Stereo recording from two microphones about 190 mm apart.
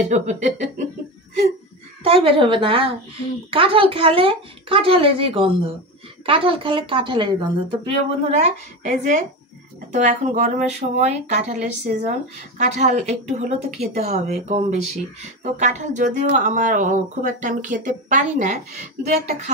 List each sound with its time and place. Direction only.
0.1 s speech: 40° right (ahead or behind)
2.0 s a woman's voice: 30° right (ahead or behind)